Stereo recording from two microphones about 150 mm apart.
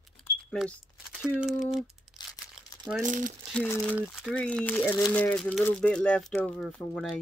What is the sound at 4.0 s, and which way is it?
Speech, 10° right (ahead or behind).